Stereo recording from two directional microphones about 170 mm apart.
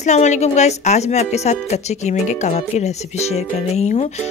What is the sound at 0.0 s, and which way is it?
Speech, 45° left (ahead or behind).